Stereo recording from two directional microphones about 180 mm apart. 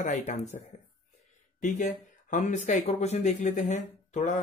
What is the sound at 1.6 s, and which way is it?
Speech, 45° left (ahead or behind).